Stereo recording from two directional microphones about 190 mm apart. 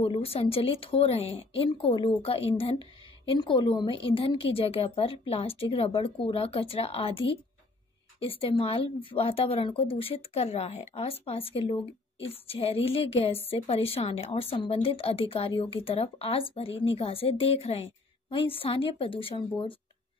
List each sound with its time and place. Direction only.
0.0 s a woman's voice: 30° left (ahead or behind)